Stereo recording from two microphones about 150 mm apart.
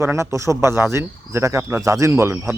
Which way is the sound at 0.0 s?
20° right (ahead or behind).